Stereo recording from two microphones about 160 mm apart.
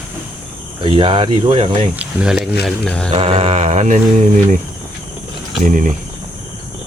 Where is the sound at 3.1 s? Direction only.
35° right (ahead or behind).